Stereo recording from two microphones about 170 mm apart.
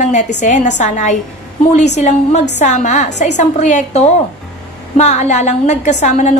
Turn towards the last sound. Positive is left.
turn(degrees=45)  # may be behind; listen again after turning